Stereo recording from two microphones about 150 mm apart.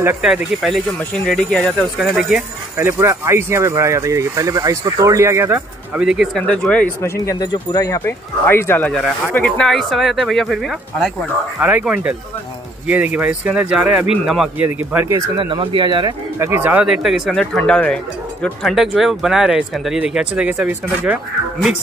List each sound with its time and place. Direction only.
0.2 s speech: 5° right (ahead or behind)
2.0 s speech: 5° right (ahead or behind)
7.2 s speech: 20° left (ahead or behind); by 15.1 s 10° right (ahead or behind)
15.1 s speech: 30° right (ahead or behind)
16.6 s speech: 10° right (ahead or behind)